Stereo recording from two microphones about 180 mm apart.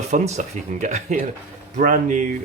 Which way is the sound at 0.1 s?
40° right (ahead or behind).